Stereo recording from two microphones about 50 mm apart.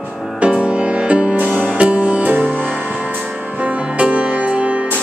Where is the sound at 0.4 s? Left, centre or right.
Right.